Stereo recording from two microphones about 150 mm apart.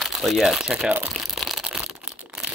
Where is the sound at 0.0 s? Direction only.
Centre (ahead or behind).